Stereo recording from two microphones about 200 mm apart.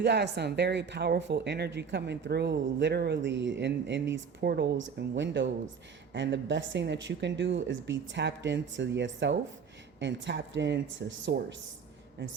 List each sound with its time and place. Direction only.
0.0 s speech: 60° right (ahead or behind)